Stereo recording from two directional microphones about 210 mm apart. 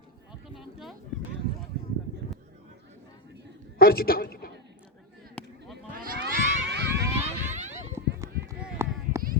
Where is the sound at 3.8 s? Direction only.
45° left (ahead or behind).